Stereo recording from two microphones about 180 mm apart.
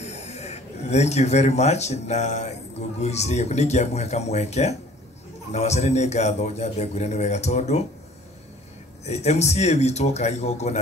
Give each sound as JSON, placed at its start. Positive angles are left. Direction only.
{"t": 0.0, "sound": "speech", "side_deg": 40}
{"t": 9.0, "sound": "speech", "side_deg": 35}